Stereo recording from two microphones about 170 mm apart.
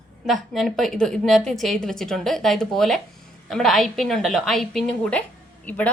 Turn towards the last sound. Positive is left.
turn(degrees=10)  # may be behind; listen again after turning